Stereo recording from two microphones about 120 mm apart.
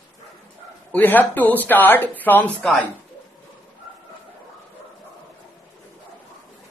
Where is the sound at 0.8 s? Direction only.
15° left (ahead or behind).